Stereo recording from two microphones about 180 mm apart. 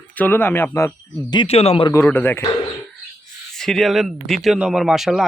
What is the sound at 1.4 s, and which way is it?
Speech, 35° left (ahead or behind).